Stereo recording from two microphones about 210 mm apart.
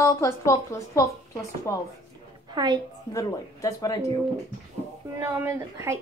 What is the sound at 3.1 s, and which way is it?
A woman's voice, 15° left (ahead or behind).